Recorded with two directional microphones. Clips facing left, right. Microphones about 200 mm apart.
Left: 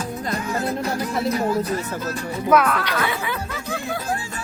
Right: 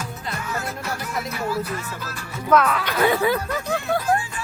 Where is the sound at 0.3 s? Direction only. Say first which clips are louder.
Left 5 dB; 35° left (ahead or behind).